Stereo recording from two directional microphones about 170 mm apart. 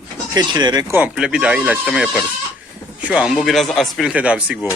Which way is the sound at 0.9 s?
5° right (ahead or behind).